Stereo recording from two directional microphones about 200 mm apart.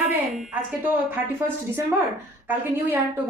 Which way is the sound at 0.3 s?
10° right (ahead or behind).